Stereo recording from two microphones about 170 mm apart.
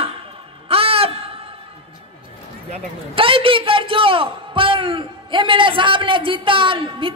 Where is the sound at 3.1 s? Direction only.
30° right (ahead or behind).